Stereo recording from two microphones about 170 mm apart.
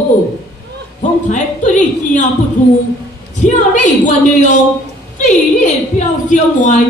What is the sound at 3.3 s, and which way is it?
A woman's voice, 45° left (ahead or behind).